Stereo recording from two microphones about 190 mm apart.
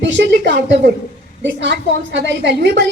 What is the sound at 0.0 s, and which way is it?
A woman's voice, 65° right (ahead or behind).